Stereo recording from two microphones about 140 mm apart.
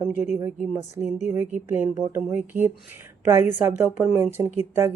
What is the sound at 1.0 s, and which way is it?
Speech, 55° left (ahead or behind).